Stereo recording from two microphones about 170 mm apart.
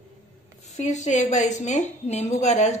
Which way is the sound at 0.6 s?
40° left (ahead or behind).